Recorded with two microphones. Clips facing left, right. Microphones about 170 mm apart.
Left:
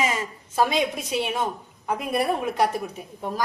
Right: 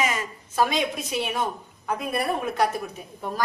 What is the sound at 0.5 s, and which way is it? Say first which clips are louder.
Speech: left 1 dB; 10° left (ahead or behind).